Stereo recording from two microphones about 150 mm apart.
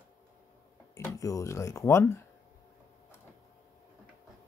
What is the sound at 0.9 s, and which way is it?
Speech, 20° left (ahead or behind).